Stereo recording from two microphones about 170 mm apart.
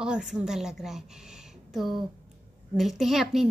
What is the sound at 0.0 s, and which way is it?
A woman's voice, 5° right (ahead or behind).